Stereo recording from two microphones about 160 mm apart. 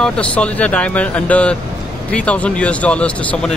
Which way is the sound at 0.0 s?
5° left (ahead or behind).